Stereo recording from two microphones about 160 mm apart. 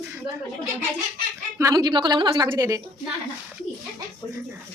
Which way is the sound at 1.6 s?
20° right (ahead or behind).